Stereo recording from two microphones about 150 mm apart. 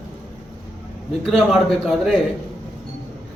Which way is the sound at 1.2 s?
5° left (ahead or behind).